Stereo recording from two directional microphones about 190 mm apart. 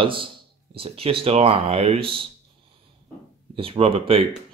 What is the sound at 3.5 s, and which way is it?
Speech, 30° right (ahead or behind).